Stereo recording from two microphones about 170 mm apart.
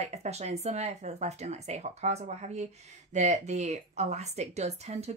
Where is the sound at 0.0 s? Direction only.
40° right (ahead or behind).